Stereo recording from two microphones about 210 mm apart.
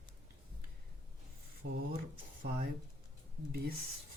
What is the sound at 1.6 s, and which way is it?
Speech, 90° right.